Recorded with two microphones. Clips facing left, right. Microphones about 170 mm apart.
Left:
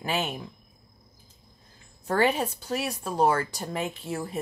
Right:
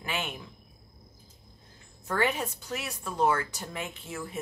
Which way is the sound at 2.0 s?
35° left (ahead or behind).